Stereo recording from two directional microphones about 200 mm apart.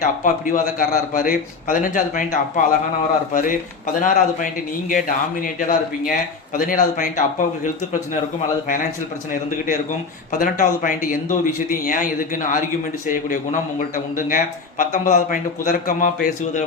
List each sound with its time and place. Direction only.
0.0 s a man's voice: 40° left (ahead or behind)
10.3 s a man's voice: 45° left (ahead or behind)